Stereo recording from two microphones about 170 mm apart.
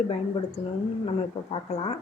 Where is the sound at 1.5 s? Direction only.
35° left (ahead or behind).